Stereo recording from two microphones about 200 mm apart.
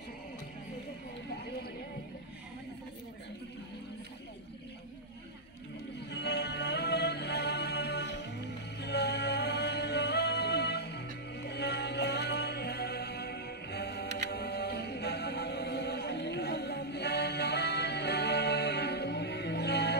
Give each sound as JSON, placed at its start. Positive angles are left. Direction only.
{"t": 5.9, "sound": "music", "side_deg": 55}